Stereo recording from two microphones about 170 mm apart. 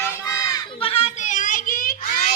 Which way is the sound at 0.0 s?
15° left (ahead or behind).